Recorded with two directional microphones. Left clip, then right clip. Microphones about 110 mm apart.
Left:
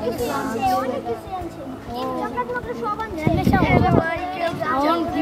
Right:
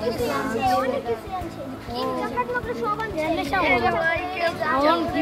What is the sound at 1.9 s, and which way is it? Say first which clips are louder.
Speech: even; 5° right (ahead or behind).